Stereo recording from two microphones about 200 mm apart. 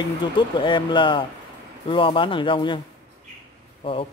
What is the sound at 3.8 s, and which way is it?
Speech, 25° left (ahead or behind).